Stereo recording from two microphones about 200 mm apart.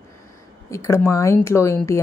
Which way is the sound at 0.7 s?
15° left (ahead or behind).